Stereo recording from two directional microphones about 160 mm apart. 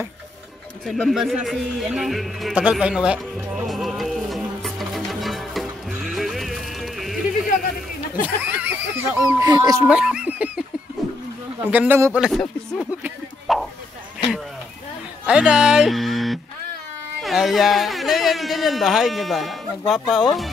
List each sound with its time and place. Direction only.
0.8 s a sound: centre (ahead or behind)
8.4 s speech: 15° right (ahead or behind)
9.2 s speech: 25° right (ahead or behind)
9.8 s speech: 5° right (ahead or behind)
11.6 s speech: 10° right (ahead or behind)
13.0 s a sound: centre (ahead or behind)
15.2 s speech: 5° right (ahead or behind)